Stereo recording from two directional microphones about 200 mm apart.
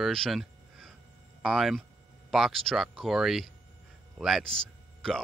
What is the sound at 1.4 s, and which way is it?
Speech, centre (ahead or behind).